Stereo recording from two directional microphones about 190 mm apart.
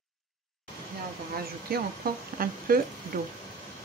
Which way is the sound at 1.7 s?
55° right (ahead or behind).